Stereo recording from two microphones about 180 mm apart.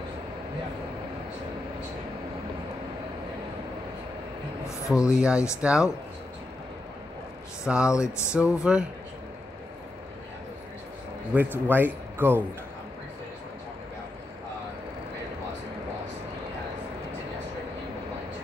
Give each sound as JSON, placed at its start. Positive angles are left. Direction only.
{"t": 4.9, "sound": "speech", "side_deg": -5}
{"t": 7.6, "sound": "speech", "side_deg": -5}
{"t": 7.9, "sound": "a sound", "side_deg": 15}
{"t": 8.4, "sound": "speech", "side_deg": -5}
{"t": 11.5, "sound": "speech", "side_deg": -10}